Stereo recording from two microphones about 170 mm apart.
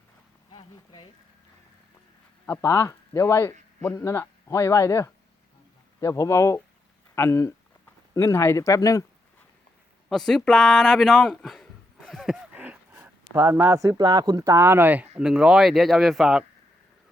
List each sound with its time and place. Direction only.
2.5 s a man's voice: 15° left (ahead or behind)
10.1 s speech: centre (ahead or behind)